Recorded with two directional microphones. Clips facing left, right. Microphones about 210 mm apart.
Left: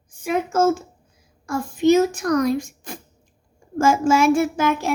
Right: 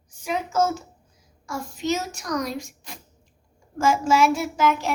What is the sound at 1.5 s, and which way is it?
A child's voice, 55° left (ahead or behind).